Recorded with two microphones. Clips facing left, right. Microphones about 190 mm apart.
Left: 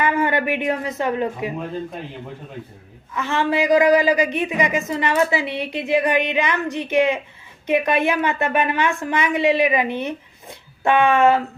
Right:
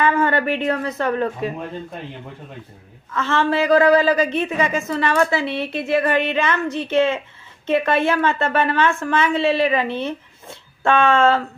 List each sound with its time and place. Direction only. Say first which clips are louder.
0.0 s speech: right 1 dB; 15° left (ahead or behind)
3.1 s a woman's voice: right 1 dB; 15° left (ahead or behind)